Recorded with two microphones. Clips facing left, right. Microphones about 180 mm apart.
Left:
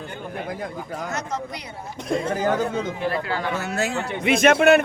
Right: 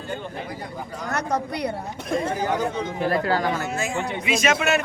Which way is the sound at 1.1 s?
60° right (ahead or behind).